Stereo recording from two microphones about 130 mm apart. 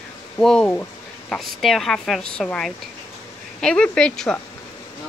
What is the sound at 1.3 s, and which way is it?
Speech, centre (ahead or behind).